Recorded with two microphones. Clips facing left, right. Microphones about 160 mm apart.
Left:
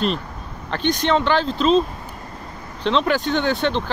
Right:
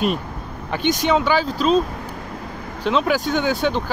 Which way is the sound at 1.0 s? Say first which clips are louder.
Even; 5° right (ahead or behind).